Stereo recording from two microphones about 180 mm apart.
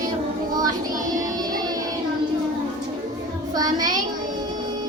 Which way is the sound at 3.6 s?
20° right (ahead or behind).